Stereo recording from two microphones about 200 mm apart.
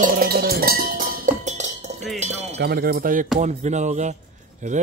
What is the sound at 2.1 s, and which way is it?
Chink, 35° right (ahead or behind).